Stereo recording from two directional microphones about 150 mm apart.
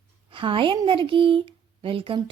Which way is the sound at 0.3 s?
35° right (ahead or behind).